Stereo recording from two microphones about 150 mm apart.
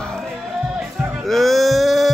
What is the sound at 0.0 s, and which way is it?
Music, 5° left (ahead or behind).